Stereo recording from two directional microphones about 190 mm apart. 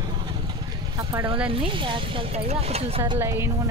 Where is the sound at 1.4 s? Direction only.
25° right (ahead or behind).